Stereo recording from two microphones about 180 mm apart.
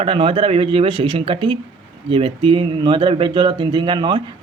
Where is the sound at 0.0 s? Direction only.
30° right (ahead or behind).